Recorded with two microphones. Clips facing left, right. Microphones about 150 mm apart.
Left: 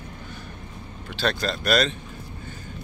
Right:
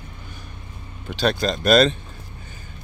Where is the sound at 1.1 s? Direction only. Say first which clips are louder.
Right 4 dB; 15° right (ahead or behind).